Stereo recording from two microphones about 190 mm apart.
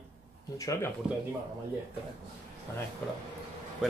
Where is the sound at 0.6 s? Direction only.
15° left (ahead or behind).